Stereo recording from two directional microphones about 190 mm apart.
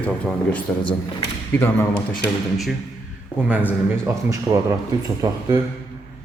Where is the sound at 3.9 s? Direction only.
15° right (ahead or behind).